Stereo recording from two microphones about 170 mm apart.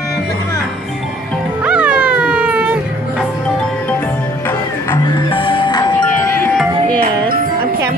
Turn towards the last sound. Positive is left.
turn(degrees=25)  # may be behind; listen again after turning